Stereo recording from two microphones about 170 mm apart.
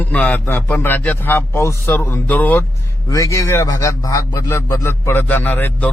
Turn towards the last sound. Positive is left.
turn(degrees=10)  # may be behind; listen again after turning